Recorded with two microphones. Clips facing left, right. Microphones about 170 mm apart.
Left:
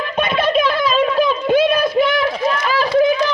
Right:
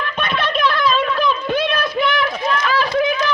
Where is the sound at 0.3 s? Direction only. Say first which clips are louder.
Left 3 dB; 45° left (ahead or behind).